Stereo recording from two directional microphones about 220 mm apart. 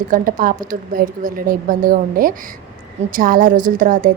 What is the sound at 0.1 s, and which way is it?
A woman's voice, 40° right (ahead or behind).